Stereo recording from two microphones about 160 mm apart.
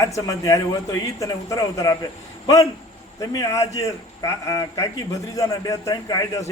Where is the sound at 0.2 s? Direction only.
20° left (ahead or behind).